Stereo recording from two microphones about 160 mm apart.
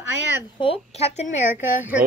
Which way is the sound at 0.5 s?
35° left (ahead or behind).